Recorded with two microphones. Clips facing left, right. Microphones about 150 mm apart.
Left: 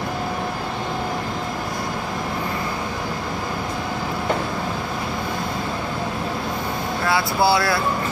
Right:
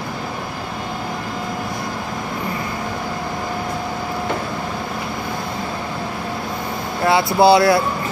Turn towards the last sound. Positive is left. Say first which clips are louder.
# right 7 dB
turn(degrees=-20)  # may be behind; listen again after turning